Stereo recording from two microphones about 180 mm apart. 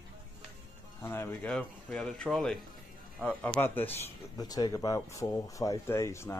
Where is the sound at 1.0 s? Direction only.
10° left (ahead or behind).